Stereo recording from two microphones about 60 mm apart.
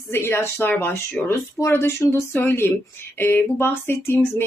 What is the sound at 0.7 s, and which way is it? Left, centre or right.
Speech, left.